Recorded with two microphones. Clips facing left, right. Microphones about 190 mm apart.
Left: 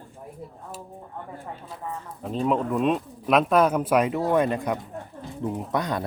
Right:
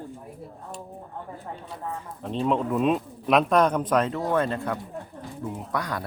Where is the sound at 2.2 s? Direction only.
5° left (ahead or behind); by 6.0 s 20° left (ahead or behind).